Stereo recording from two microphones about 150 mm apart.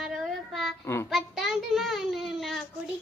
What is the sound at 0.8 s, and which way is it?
Child singing, 20° left (ahead or behind).